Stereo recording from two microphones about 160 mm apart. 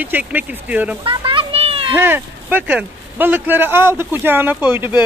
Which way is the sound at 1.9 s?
15° right (ahead or behind).